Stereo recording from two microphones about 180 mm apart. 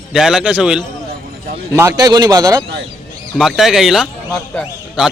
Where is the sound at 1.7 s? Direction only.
15° right (ahead or behind).